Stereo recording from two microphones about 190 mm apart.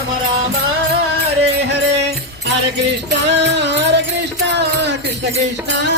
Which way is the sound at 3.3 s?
65° right (ahead or behind).